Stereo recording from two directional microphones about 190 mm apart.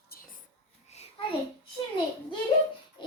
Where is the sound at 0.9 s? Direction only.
35° left (ahead or behind).